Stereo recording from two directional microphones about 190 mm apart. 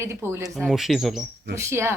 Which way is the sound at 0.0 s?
15° right (ahead or behind).